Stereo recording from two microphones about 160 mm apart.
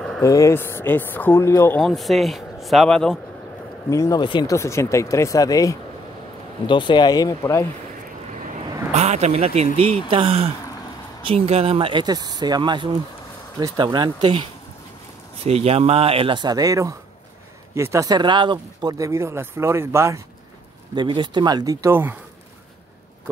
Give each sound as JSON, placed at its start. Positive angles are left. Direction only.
{"t": 0.2, "sound": "speech", "side_deg": 20}
{"t": 1.8, "sound": "speech", "side_deg": 0}
{"t": 3.9, "sound": "speech", "side_deg": 20}
{"t": 4.6, "sound": "speech", "side_deg": 20}
{"t": 8.9, "sound": "speech", "side_deg": -45}
{"t": 15.4, "sound": "speech", "side_deg": -40}
{"t": 20.9, "sound": "speech", "side_deg": -30}